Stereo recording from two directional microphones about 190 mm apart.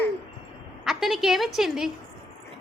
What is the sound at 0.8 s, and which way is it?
A woman's voice, centre (ahead or behind).